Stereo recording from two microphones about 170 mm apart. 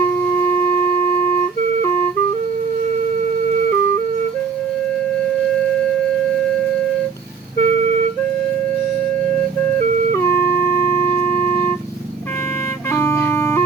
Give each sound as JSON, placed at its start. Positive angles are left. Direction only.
{"t": 7.6, "sound": "music", "side_deg": -40}
{"t": 9.3, "sound": "music", "side_deg": 10}
{"t": 9.7, "sound": "music", "side_deg": -45}
{"t": 10.2, "sound": "music", "side_deg": 15}
{"t": 12.9, "sound": "music", "side_deg": 15}